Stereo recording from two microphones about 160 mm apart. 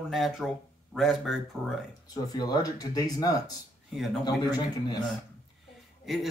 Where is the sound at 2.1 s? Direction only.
25° left (ahead or behind).